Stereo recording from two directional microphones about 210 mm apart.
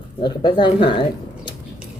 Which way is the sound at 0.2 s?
20° left (ahead or behind).